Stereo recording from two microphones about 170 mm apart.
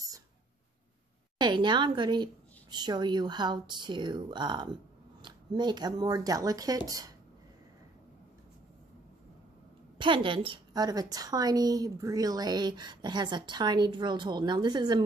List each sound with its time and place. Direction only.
1.4 s a woman's voice: 25° right (ahead or behind)
9.9 s a woman's voice: 30° right (ahead or behind)